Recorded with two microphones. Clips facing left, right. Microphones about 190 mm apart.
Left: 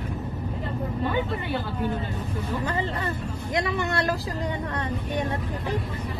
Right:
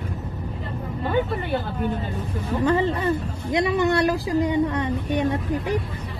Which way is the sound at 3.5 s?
15° right (ahead or behind).